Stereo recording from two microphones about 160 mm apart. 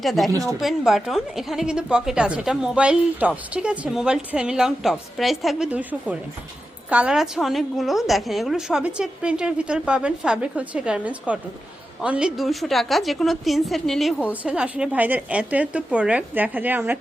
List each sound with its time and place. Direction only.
0.0 s a woman's voice: centre (ahead or behind)